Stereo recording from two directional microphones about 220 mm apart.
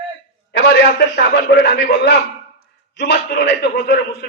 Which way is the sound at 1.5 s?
50° left (ahead or behind).